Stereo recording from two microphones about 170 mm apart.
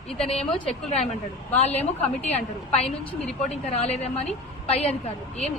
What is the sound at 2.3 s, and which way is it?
A woman's voice, 40° left (ahead or behind).